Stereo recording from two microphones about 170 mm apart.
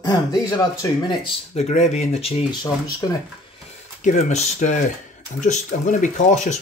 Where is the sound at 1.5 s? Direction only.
40° left (ahead or behind).